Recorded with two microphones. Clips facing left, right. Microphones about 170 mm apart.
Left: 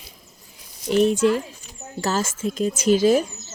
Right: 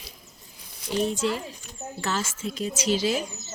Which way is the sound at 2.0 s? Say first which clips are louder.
Left 6 dB; 40° left (ahead or behind).